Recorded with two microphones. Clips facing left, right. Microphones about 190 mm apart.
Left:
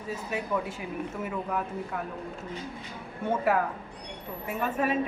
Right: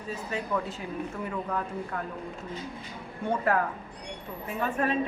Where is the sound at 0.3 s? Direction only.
10° left (ahead or behind).